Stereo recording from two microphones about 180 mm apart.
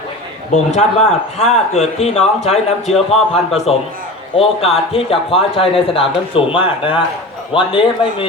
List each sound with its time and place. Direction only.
0.5 s a man's voice: 40° left (ahead or behind)